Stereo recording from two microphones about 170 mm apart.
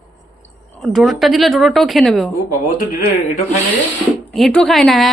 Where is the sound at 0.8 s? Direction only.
Centre (ahead or behind).